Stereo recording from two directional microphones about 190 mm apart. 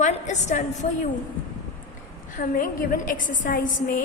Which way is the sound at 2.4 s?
50° left (ahead or behind).